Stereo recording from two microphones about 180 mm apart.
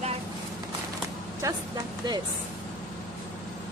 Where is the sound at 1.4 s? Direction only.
15° right (ahead or behind).